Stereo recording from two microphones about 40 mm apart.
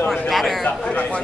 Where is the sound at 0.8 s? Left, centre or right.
Left.